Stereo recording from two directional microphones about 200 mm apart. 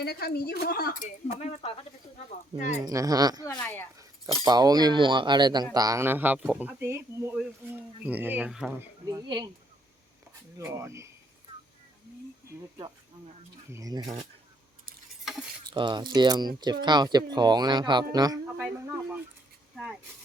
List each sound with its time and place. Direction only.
0.0 s a woman's voice: 50° left (ahead or behind)
1.4 s speech: 30° left (ahead or behind)
2.8 s speech: 15° right (ahead or behind)
3.4 s speech: 10° left (ahead or behind)
4.4 s speech: 20° right (ahead or behind); by 8.9 s 5° right (ahead or behind)
9.0 s speech: 20° right (ahead or behind)
10.6 s speech: 15° right (ahead or behind)
13.7 s speech: 20° right (ahead or behind)
15.2 s cutlery: centre (ahead or behind)
15.6 s speech: 25° right (ahead or behind)
18.6 s speech: 5° right (ahead or behind)